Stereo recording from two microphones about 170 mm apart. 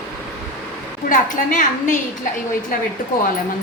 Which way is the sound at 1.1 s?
50° left (ahead or behind).